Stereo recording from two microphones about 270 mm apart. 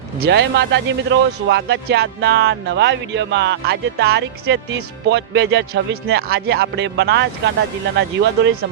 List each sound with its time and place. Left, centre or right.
0.2 s speech: right